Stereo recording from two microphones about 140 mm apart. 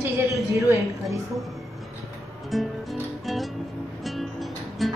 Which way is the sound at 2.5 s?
Centre (ahead or behind).